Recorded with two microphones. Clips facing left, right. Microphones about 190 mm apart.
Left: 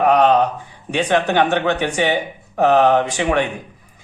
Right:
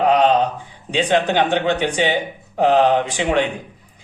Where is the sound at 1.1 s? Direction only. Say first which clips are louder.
Left 1 dB; 20° right (ahead or behind).